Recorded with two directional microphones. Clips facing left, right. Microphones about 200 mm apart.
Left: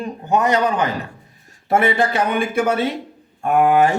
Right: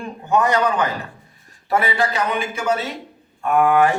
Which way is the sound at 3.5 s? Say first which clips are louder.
Left 1 dB; 25° left (ahead or behind).